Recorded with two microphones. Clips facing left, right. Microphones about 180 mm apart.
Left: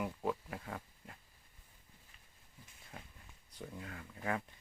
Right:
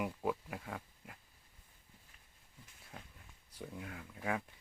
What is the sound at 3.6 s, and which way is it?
Speech, 5° right (ahead or behind).